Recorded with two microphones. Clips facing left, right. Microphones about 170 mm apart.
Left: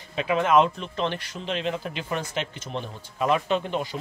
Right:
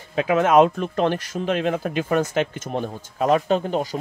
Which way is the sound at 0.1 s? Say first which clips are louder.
Right 4 dB; 45° right (ahead or behind).